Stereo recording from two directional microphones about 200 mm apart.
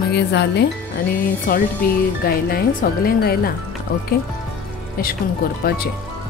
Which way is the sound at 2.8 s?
45° left (ahead or behind).